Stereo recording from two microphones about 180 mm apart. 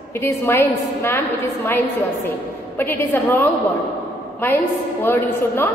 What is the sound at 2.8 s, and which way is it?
A woman's voice, 10° left (ahead or behind).